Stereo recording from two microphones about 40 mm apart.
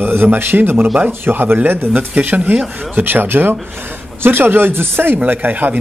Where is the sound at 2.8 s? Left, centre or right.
Right.